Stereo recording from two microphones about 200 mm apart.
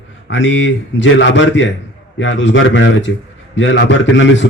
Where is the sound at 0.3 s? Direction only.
65° left (ahead or behind).